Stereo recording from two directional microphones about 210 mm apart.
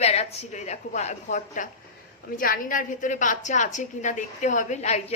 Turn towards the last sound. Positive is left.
turn(degrees=30)  # may be behind; listen again after turning